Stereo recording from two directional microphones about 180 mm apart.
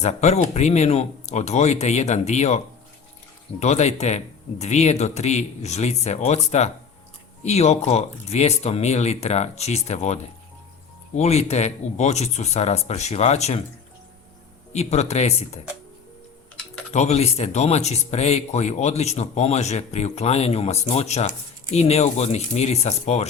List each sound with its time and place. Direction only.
0.0 s speech: 40° left (ahead or behind)
3.6 s speech: 40° left (ahead or behind)
11.2 s speech: 35° left (ahead or behind)
14.7 s speech: 40° left (ahead or behind)
16.9 s speech: 40° left (ahead or behind)